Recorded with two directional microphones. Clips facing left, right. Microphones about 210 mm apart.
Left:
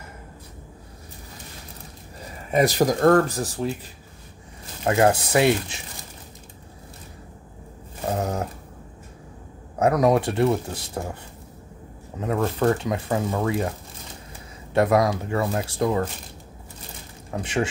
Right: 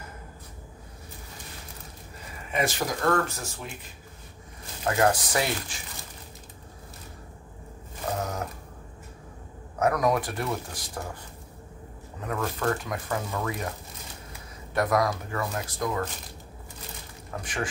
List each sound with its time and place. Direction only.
2.5 s speech: 40° left (ahead or behind)
4.8 s speech: 25° left (ahead or behind)
8.2 s speech: 30° left (ahead or behind)
9.8 s speech: 25° left (ahead or behind)
12.2 s speech: 30° left (ahead or behind)
14.7 s speech: 25° left (ahead or behind)
17.3 s speech: 25° left (ahead or behind)